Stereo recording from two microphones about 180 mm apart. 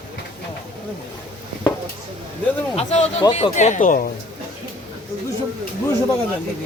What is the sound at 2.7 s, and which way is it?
Speech, 35° left (ahead or behind).